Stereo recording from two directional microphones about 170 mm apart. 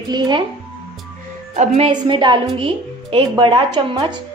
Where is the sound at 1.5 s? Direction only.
40° right (ahead or behind).